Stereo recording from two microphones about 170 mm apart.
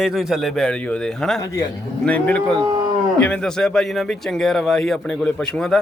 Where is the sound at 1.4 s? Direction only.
20° left (ahead or behind).